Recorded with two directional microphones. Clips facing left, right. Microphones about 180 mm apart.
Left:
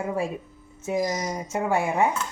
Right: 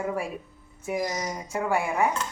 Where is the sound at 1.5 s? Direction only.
25° left (ahead or behind).